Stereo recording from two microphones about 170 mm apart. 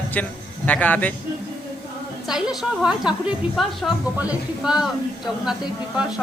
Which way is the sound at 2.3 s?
5° right (ahead or behind).